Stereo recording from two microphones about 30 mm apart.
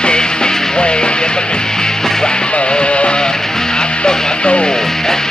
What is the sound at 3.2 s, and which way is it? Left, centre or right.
Music, left.